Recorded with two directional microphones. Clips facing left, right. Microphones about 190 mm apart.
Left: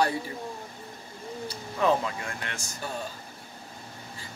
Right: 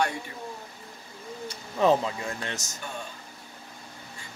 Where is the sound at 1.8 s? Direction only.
25° right (ahead or behind).